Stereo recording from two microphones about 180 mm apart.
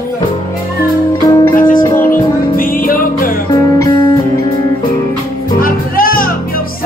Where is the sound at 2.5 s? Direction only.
50° left (ahead or behind).